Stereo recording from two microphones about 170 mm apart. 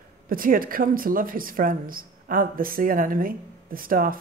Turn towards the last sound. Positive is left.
turn(degrees=-55)  # may be behind; listen again after turning